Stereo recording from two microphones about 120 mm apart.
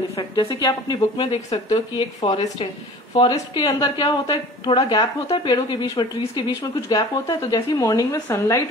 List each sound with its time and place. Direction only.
0.4 s a woman's voice: 30° left (ahead or behind)
4.3 s a woman's voice: 45° left (ahead or behind); by 8.6 s 25° left (ahead or behind)